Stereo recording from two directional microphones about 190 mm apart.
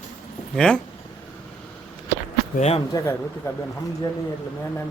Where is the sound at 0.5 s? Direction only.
5° left (ahead or behind).